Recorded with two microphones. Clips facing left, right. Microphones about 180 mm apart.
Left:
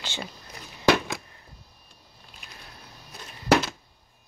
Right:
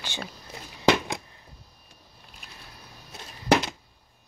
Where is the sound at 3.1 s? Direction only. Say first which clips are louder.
Left 1 dB; 15° right (ahead or behind).